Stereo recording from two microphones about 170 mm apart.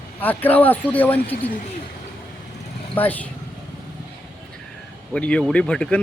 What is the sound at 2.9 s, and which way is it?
Speech, 10° left (ahead or behind).